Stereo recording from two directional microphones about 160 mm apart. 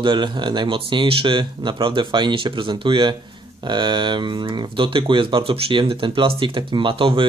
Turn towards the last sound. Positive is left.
turn(degrees=-30)  # may be behind; listen again after turning